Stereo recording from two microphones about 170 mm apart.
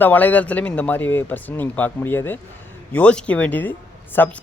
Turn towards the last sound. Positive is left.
turn(degrees=10)  # may be behind; listen again after turning